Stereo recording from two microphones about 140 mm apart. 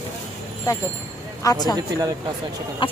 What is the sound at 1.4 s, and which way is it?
Speech, 30° left (ahead or behind).